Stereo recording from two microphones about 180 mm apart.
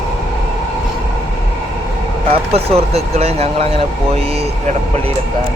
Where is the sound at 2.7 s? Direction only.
35° right (ahead or behind).